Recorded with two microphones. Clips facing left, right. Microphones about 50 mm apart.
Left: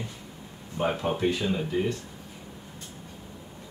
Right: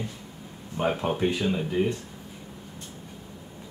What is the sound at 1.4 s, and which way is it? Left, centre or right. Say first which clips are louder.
Speech: right 2 dB; centre.